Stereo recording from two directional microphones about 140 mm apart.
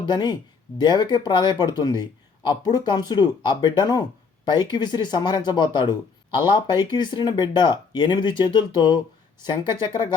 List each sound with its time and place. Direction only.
0.1 s speech: 30° left (ahead or behind)